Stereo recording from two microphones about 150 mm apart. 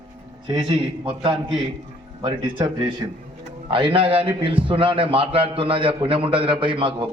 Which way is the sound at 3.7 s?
35° right (ahead or behind).